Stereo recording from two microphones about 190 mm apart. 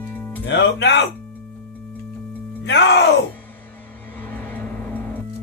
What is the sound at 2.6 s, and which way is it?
Music, 65° left (ahead or behind).